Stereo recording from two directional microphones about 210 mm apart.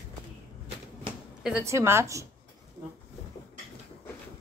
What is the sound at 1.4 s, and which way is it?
Speech, 10° right (ahead or behind).